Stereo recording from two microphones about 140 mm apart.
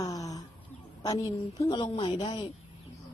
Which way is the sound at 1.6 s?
35° left (ahead or behind).